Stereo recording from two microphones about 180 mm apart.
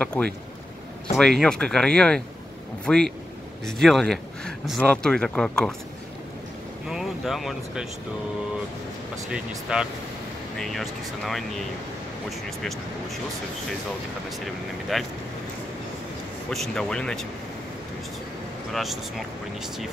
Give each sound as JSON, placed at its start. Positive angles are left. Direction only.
{"t": 0.0, "sound": "speech", "side_deg": 5}
{"t": 1.4, "sound": "speech", "side_deg": 5}
{"t": 6.9, "sound": "speech", "side_deg": 0}
{"t": 9.3, "sound": "speech", "side_deg": -5}
{"t": 14.9, "sound": "speech", "side_deg": 0}
{"t": 16.4, "sound": "speech", "side_deg": 0}
{"t": 18.7, "sound": "speech", "side_deg": 0}